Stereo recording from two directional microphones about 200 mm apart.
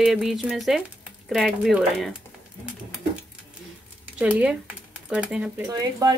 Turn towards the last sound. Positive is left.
turn(degrees=-20)  # may be behind; listen again after turning